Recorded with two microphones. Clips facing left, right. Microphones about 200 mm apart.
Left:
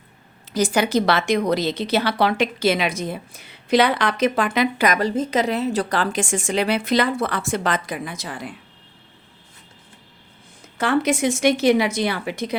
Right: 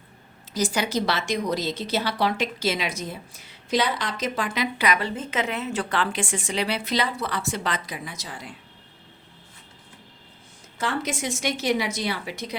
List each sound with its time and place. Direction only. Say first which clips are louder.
0.5 s a woman's voice: left 6 dB; 60° left (ahead or behind)
10.8 s a woman's voice: left 8 dB; 65° left (ahead or behind)